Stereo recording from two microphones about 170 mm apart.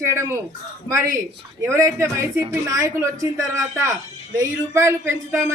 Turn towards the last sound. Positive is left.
turn(degrees=-15)  # may be behind; listen again after turning